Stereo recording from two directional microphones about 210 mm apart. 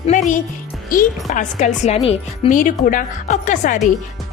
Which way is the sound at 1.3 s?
35° left (ahead or behind).